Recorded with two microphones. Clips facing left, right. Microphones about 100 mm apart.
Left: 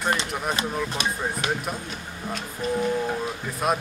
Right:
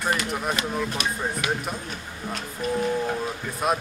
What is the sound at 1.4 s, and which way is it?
Speech, 35° left (ahead or behind).